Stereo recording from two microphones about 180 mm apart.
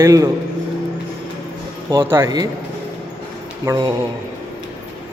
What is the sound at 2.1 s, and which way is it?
Speech, 20° right (ahead or behind).